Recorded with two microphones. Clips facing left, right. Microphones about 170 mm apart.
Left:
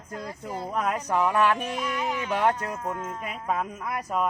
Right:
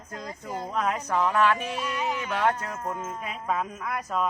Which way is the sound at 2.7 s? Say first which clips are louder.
Left 1 dB; 5° right (ahead or behind).